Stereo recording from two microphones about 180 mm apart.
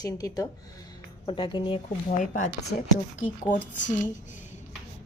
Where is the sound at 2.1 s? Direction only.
45° left (ahead or behind).